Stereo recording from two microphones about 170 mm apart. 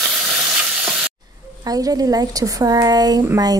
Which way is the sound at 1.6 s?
20° right (ahead or behind).